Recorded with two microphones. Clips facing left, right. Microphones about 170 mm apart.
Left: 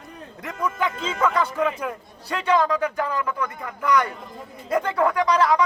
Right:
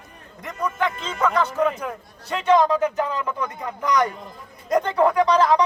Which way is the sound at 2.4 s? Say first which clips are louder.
Right 3 dB; 20° right (ahead or behind).